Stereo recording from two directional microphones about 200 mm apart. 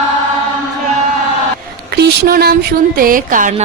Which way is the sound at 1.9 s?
55° right (ahead or behind).